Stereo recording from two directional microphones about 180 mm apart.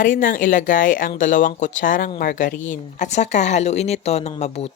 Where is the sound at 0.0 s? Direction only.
50° left (ahead or behind).